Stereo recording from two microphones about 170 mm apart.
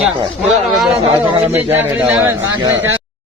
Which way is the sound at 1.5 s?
10° right (ahead or behind).